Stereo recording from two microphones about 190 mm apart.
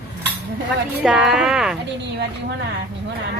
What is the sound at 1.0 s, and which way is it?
Speech, 5° right (ahead or behind).